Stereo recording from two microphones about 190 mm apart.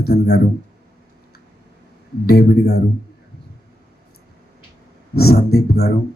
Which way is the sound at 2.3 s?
55° left (ahead or behind).